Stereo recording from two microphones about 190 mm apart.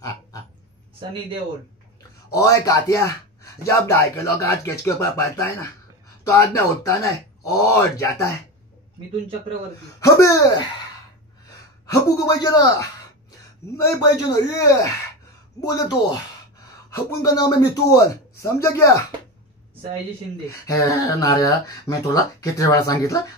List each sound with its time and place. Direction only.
2.3 s speech: 15° left (ahead or behind)
9.9 s speech: 15° left (ahead or behind)
11.8 s a woman's voice: 20° left (ahead or behind)
14.3 s speech: 15° left (ahead or behind)
20.6 s speech: 20° left (ahead or behind)